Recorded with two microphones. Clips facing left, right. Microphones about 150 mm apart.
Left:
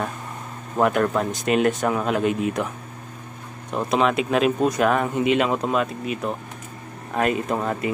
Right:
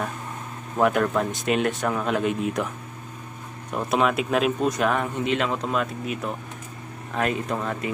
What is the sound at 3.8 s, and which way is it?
Speech, 5° right (ahead or behind).